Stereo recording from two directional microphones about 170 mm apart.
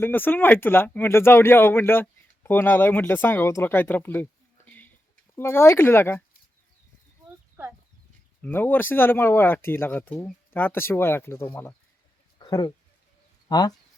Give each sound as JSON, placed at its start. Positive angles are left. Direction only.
{"t": 0.0, "sound": "speech", "side_deg": 10}
{"t": 8.4, "sound": "speech", "side_deg": 10}
{"t": 12.4, "sound": "a sound", "side_deg": 25}
{"t": 13.5, "sound": "speech", "side_deg": 25}